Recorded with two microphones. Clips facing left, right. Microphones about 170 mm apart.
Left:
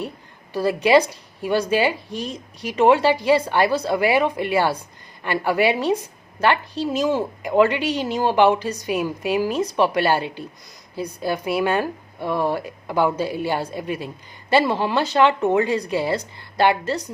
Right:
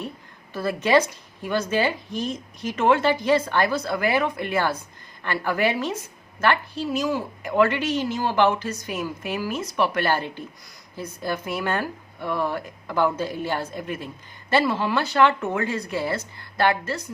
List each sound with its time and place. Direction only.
0.5 s a woman's voice: 15° left (ahead or behind)